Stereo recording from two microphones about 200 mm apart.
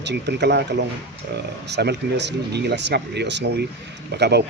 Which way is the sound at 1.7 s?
55° right (ahead or behind).